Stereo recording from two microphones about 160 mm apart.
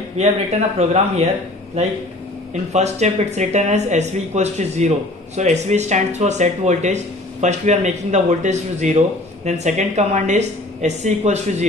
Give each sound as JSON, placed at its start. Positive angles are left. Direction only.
{"t": 0.2, "sound": "speech", "side_deg": -45}
{"t": 2.7, "sound": "speech", "side_deg": -45}